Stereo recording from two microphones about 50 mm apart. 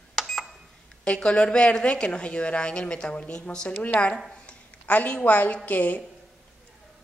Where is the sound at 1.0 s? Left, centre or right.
Centre.